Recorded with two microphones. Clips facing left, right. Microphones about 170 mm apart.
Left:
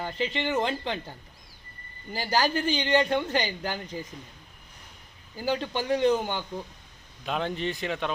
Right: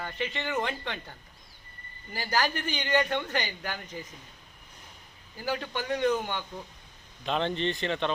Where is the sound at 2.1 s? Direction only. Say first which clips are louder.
Left 3 dB; 30° left (ahead or behind).